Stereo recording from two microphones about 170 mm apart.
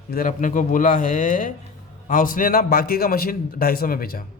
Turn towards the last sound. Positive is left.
turn(degrees=60)  # may be behind; listen again after turning